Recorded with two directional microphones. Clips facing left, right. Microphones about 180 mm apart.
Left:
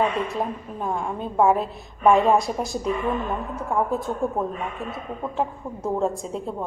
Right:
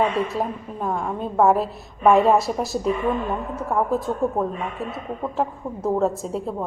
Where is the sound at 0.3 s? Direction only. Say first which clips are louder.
Right 1 dB; centre (ahead or behind).